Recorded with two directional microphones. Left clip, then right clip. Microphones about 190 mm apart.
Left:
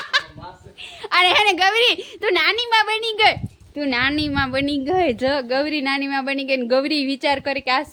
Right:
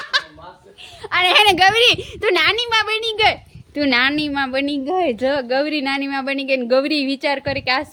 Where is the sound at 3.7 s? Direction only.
25° right (ahead or behind).